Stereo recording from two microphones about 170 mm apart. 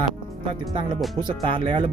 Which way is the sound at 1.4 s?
30° right (ahead or behind).